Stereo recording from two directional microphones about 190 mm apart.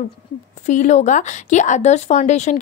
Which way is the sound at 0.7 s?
40° left (ahead or behind).